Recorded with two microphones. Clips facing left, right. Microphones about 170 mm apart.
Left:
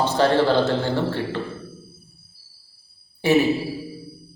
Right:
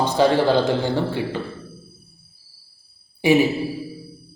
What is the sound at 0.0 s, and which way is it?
A man's voice, 15° right (ahead or behind).